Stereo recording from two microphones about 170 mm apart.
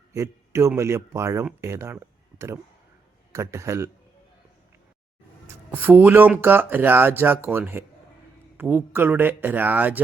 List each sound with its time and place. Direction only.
0.1 s a man's voice: 20° right (ahead or behind)
5.7 s speech: 10° right (ahead or behind)